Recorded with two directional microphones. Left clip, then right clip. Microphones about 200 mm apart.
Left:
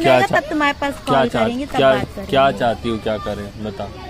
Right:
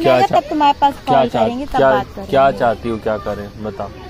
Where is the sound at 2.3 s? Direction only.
Centre (ahead or behind).